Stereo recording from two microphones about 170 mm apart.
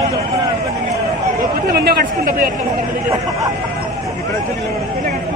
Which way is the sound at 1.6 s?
65° right (ahead or behind).